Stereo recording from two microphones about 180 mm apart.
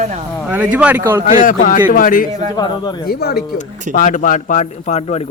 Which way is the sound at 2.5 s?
20° left (ahead or behind).